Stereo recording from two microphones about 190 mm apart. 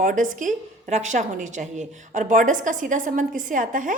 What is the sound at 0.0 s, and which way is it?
A woman's voice, 45° right (ahead or behind).